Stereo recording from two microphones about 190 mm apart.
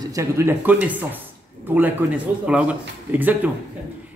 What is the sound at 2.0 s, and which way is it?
A man's voice, 10° right (ahead or behind).